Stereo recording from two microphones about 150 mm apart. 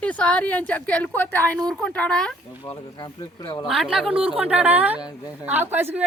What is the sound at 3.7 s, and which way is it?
A woman's voice, 5° right (ahead or behind).